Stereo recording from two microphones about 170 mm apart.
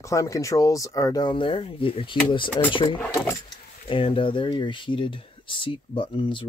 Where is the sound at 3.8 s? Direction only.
30° left (ahead or behind).